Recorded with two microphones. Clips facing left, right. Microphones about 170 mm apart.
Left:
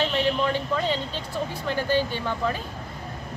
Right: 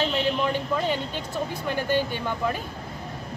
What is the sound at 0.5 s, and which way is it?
Speech, 15° right (ahead or behind).